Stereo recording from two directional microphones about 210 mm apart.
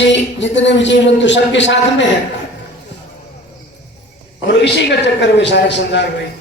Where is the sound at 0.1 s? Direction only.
60° left (ahead or behind).